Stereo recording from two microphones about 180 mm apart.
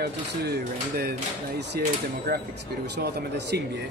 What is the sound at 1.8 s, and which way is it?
A man's voice, 60° right (ahead or behind).